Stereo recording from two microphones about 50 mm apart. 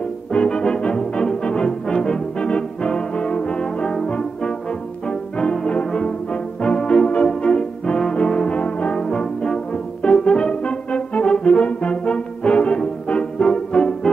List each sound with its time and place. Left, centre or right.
0.3 s brass instrument: centre